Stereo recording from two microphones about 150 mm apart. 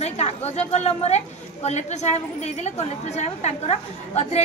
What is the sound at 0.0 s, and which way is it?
A woman's voice, 45° left (ahead or behind).